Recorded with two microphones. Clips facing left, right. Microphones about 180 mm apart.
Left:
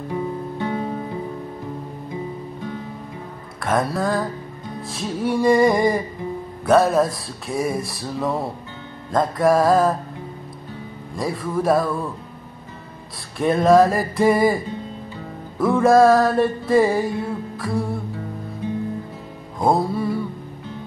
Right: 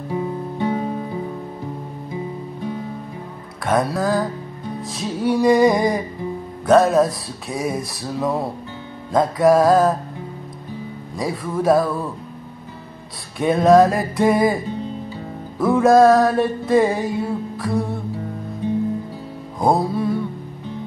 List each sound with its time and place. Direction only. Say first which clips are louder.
0.1 s music: right 2 dB; 10° right (ahead or behind)
3.6 s music: right 2 dB; centre (ahead or behind)
6.6 s speech: right 2 dB; 5° left (ahead or behind)
6.9 s music: right 2 dB; centre (ahead or behind)
11.1 s music: even; centre (ahead or behind)
13.4 s music: right 1 dB; centre (ahead or behind)
15.6 s music: right 1 dB; centre (ahead or behind)
19.6 s music: right 1 dB; centre (ahead or behind)